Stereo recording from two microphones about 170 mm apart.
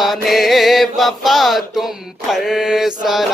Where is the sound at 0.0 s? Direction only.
Centre (ahead or behind).